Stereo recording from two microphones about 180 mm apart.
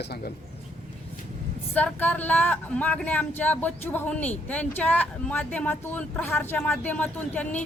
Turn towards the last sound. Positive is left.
turn(degrees=10)  # may be behind; listen again after turning